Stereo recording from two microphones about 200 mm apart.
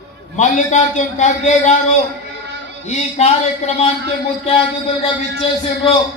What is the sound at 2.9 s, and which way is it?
A man's voice, 35° left (ahead or behind).